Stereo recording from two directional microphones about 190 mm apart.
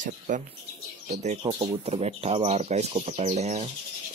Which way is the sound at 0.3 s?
40° right (ahead or behind).